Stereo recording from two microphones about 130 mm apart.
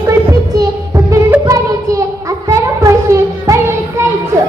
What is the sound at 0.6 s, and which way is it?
Music, 25° right (ahead or behind).